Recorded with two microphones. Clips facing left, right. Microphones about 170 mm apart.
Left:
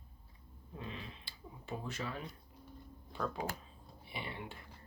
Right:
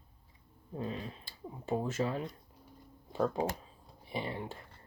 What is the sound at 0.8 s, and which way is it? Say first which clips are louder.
Speech: right 8 dB; 40° right (ahead or behind).